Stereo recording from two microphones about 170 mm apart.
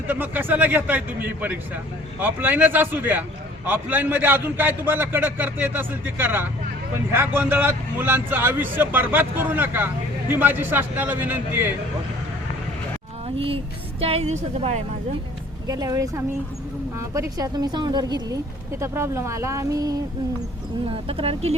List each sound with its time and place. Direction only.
0.1 s a man's voice: 10° right (ahead or behind)
13.2 s a woman's voice: 35° right (ahead or behind)
15.6 s a man's voice: 20° right (ahead or behind)
20.9 s a woman's voice: 35° right (ahead or behind)